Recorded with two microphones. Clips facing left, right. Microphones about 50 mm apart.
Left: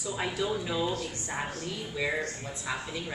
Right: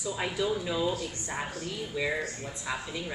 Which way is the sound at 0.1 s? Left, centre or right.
Centre.